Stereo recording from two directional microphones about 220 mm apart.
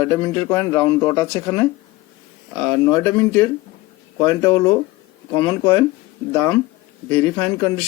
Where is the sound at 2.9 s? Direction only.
10° left (ahead or behind).